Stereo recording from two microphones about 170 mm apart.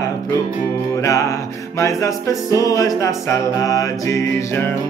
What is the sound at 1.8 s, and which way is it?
Music, 20° left (ahead or behind).